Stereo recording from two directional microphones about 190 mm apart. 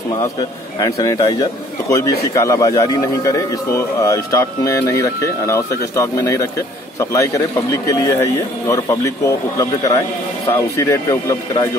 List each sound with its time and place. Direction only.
0.7 s a man's voice: 20° left (ahead or behind)